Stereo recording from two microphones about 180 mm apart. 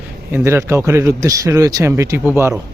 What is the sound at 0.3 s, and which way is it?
Speech, 10° right (ahead or behind).